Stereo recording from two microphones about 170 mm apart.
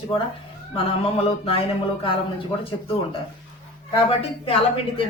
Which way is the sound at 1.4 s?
35° left (ahead or behind).